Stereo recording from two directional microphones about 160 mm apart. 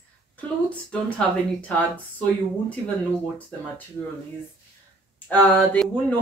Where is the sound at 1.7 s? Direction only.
10° left (ahead or behind).